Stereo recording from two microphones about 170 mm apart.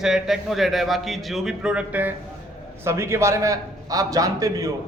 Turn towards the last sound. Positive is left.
turn(degrees=-20)  # may be behind; listen again after turning